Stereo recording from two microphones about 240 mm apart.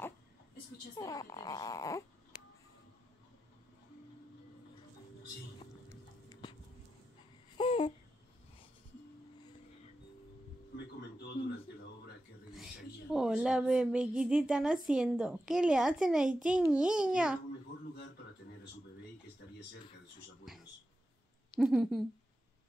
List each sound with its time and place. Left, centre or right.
0.9 s speech: centre
5.9 s dog: centre
7.5 s babbling: left
11.0 s a sound: left
12.5 s a woman's voice: centre
21.5 s a woman's voice: centre